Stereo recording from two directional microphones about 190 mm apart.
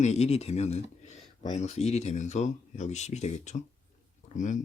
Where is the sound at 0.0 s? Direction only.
35° left (ahead or behind).